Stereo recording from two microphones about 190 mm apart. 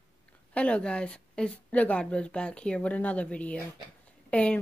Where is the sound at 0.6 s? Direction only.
5° left (ahead or behind).